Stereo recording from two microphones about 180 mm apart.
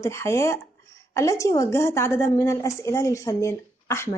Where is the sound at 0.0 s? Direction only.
15° left (ahead or behind).